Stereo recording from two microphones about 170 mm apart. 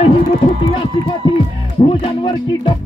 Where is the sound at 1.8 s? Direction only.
30° left (ahead or behind).